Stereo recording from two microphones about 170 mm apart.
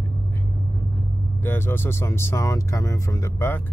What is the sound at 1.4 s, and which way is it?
Speech, 10° left (ahead or behind).